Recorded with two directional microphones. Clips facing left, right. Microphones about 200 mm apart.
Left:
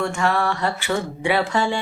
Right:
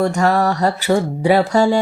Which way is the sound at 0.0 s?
40° right (ahead or behind).